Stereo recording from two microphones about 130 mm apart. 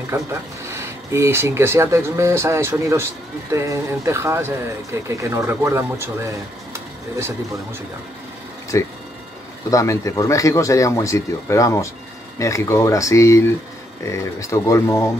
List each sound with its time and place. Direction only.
0.1 s speech: 20° right (ahead or behind)
8.7 s speech: 20° left (ahead or behind)